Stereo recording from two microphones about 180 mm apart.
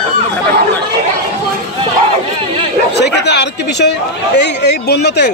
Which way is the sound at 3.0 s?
70° left (ahead or behind).